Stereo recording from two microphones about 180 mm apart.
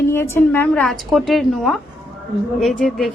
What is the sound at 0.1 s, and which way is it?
A woman's voice, 15° left (ahead or behind).